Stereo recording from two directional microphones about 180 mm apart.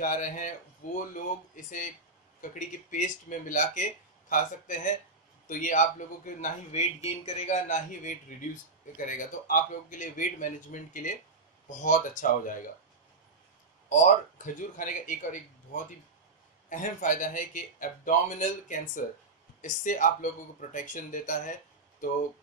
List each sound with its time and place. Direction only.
0.0 s speech: 45° left (ahead or behind)
13.8 s speech: 45° left (ahead or behind)